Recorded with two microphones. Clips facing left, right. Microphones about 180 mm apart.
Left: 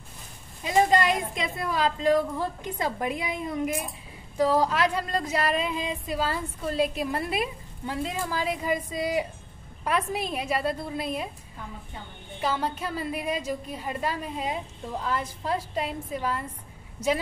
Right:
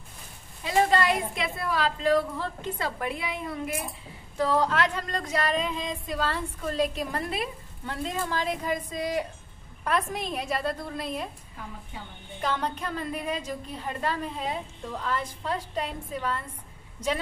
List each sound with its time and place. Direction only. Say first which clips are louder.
0.7 s a woman's voice: left 1 dB; 20° left (ahead or behind)
12.4 s speech: left 1 dB; 5° left (ahead or behind)